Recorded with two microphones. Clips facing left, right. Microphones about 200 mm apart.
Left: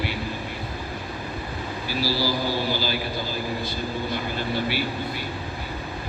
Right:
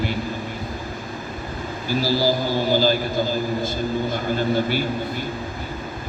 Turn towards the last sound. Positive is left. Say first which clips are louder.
# right 6 dB
turn(degrees=-45)  # may be behind; listen again after turning